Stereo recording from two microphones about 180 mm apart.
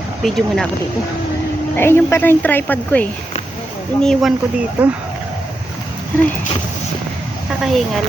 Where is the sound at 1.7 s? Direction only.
15° left (ahead or behind); by 4.9 s 5° right (ahead or behind).